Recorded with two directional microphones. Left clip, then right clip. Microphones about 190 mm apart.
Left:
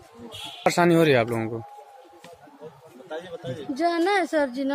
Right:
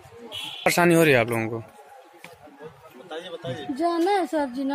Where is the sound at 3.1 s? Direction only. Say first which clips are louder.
Even; 50° left (ahead or behind).